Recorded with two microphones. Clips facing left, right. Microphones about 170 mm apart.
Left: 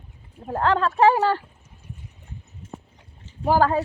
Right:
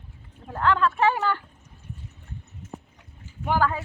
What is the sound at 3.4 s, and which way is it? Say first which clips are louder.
Speech: left 5 dB; 35° left (ahead or behind).